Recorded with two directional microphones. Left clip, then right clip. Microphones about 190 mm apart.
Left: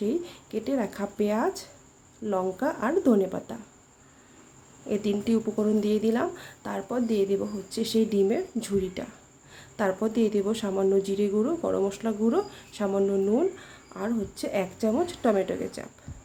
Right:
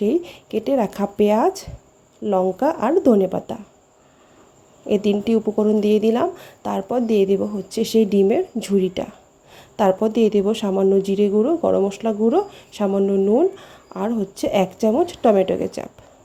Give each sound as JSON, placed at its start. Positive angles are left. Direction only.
{"t": 0.0, "sound": "a woman's voice", "side_deg": -30}
{"t": 4.9, "sound": "a woman's voice", "side_deg": -30}